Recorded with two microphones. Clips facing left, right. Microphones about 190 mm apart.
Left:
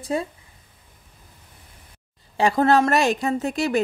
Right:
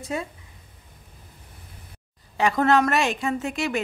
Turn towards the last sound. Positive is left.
turn(degrees=35)  # may be behind; listen again after turning